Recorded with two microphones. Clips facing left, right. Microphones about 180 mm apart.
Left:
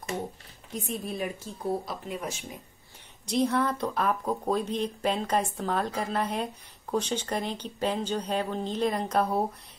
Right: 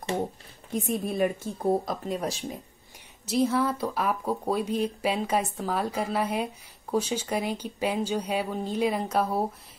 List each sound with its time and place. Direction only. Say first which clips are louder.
0.9 s speech: right 6 dB; 50° right (ahead or behind); by 2.4 s 35° right (ahead or behind)
3.3 s speech: right 1 dB; 5° right (ahead or behind)